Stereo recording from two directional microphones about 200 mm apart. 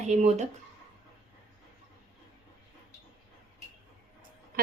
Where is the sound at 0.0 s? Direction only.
35° right (ahead or behind).